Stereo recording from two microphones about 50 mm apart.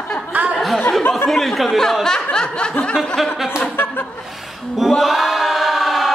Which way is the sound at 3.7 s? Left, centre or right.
Left.